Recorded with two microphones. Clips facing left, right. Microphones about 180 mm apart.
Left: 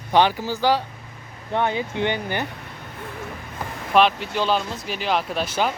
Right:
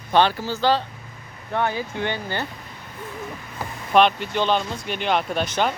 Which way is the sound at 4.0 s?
Centre (ahead or behind).